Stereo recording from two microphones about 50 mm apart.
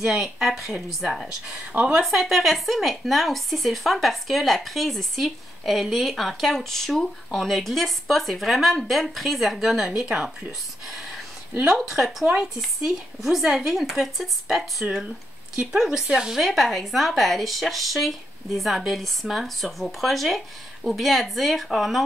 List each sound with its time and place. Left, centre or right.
0.0 s a woman's voice: centre
1.7 s speech: right
2.0 s speech: centre; by 10.5 s right
10.9 s a sound: centre
11.6 s speech: centre
15.5 s a woman's voice: centre
16.4 s speech: centre